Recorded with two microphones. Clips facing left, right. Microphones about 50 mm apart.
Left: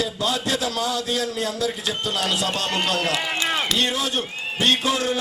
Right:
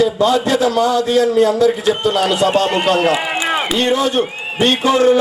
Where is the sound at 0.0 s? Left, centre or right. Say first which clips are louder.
Right 11 dB; centre.